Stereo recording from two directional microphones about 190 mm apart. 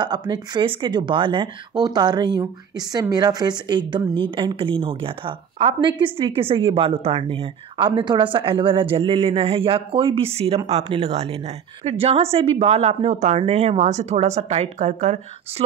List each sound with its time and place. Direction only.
0.0 s a woman's voice: 20° right (ahead or behind); by 15.6 s 40° right (ahead or behind)